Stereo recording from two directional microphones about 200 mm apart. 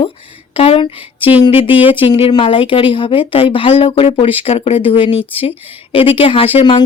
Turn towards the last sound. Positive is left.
turn(degrees=25)  # may be behind; listen again after turning